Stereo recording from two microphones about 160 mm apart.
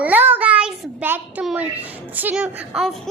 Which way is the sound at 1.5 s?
10° right (ahead or behind).